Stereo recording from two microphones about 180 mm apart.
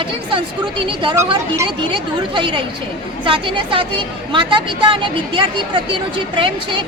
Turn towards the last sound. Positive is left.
turn(degrees=-30)  # may be behind; listen again after turning